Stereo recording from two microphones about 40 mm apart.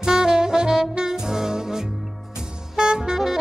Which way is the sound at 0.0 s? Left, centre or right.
Centre.